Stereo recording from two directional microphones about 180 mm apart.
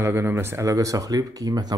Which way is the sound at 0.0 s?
15° right (ahead or behind).